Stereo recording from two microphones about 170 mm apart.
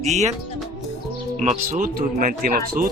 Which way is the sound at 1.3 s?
45° right (ahead or behind).